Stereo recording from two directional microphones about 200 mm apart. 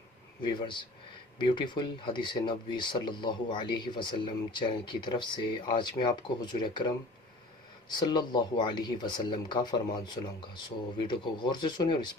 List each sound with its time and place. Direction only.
0.4 s speech: 25° left (ahead or behind)
11.1 s speech: 20° left (ahead or behind)